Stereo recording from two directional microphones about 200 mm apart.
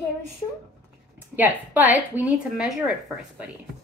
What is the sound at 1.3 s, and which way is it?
Speech, 10° right (ahead or behind).